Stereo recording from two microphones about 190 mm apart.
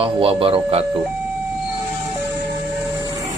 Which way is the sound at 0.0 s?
30° right (ahead or behind).